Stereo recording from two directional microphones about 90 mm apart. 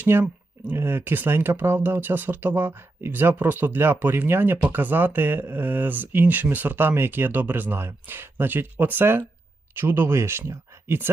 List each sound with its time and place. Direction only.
0.0 s speech: 25° right (ahead or behind)